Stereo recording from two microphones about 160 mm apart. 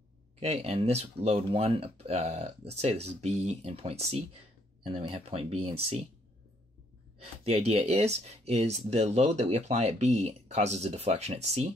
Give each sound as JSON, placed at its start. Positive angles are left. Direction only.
{"t": 0.4, "sound": "speech", "side_deg": -40}
{"t": 7.4, "sound": "speech", "side_deg": -40}